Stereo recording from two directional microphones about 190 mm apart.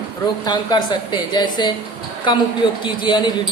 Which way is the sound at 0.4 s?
20° left (ahead or behind).